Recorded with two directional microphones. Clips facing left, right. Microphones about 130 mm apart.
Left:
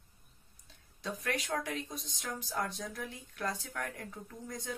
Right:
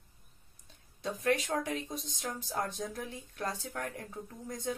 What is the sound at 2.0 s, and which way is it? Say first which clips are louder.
Speech: right 2 dB; 40° right (ahead or behind).